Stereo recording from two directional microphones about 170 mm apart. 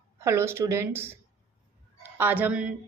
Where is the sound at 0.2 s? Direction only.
15° right (ahead or behind).